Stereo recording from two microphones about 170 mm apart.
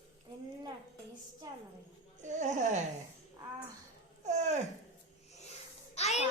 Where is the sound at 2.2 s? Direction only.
45° right (ahead or behind).